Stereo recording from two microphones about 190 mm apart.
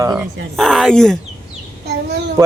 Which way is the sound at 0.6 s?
Centre (ahead or behind).